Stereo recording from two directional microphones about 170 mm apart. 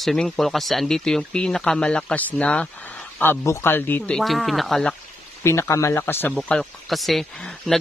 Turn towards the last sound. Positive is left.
turn(degrees=0)  # may be behind; listen again after turning